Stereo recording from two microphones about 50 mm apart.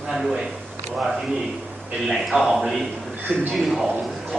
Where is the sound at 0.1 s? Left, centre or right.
Centre.